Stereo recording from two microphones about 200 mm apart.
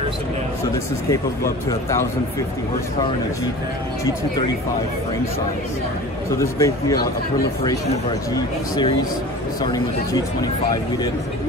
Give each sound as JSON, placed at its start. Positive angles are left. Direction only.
{"t": 1.1, "sound": "speech", "side_deg": 15}
{"t": 6.4, "sound": "speech", "side_deg": 15}
{"t": 9.6, "sound": "speech", "side_deg": 20}